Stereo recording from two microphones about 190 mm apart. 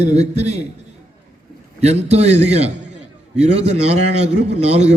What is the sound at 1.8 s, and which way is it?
A man's voice, 35° right (ahead or behind).